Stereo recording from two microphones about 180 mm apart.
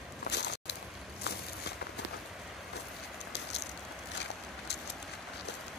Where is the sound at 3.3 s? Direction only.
70° left (ahead or behind).